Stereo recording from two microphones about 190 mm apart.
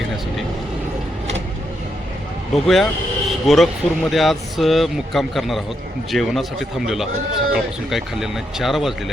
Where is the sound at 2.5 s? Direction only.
Centre (ahead or behind).